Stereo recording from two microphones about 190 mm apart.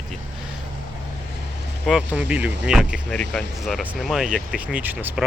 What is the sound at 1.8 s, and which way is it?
Speech, 5° right (ahead or behind).